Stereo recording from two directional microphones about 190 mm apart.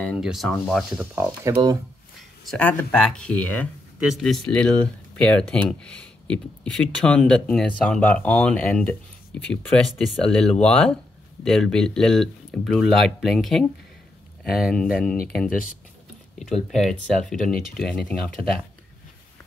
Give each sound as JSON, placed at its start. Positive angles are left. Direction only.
{"t": 0.0, "sound": "speech", "side_deg": 0}
{"t": 1.1, "sound": "speech", "side_deg": -20}
{"t": 2.5, "sound": "speech", "side_deg": 5}
{"t": 16.3, "sound": "speech", "side_deg": 0}